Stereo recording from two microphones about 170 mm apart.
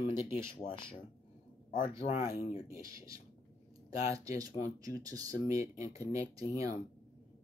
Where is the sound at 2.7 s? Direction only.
20° right (ahead or behind).